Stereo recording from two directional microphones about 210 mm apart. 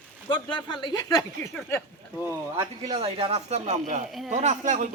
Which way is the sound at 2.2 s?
15° right (ahead or behind).